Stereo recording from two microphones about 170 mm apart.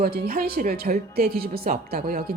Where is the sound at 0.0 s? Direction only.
60° right (ahead or behind).